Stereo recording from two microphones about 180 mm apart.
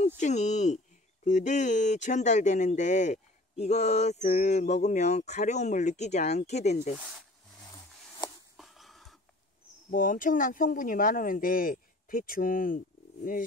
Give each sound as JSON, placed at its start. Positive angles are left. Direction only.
{"t": 0.2, "sound": "speech", "side_deg": 40}
{"t": 8.5, "sound": "a sound", "side_deg": 0}
{"t": 9.8, "sound": "speech", "side_deg": 50}